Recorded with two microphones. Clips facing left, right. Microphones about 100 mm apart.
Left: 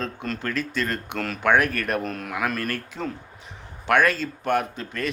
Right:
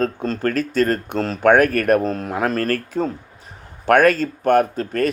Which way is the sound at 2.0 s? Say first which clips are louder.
Right 6 dB; 30° right (ahead or behind).